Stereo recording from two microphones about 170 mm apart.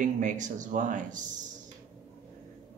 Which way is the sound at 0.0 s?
50° right (ahead or behind).